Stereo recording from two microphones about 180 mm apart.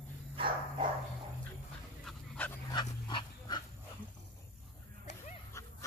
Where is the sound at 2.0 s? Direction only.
10° left (ahead or behind).